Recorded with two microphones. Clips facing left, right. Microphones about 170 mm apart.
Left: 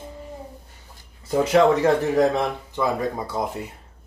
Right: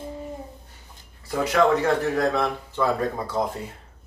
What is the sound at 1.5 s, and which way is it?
A man's voice, 25° left (ahead or behind).